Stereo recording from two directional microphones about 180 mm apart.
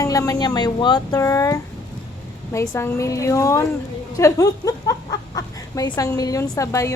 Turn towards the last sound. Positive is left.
turn(degrees=15)  # may be behind; listen again after turning